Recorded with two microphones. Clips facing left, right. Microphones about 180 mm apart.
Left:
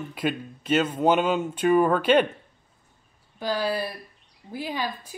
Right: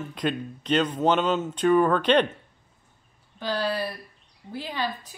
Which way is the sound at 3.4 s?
10° left (ahead or behind).